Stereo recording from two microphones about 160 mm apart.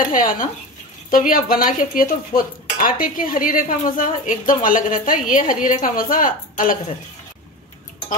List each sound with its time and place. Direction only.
0.1 s speech: 55° left (ahead or behind)